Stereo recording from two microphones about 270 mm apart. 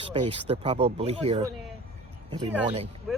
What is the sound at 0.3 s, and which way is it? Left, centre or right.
Speech, right.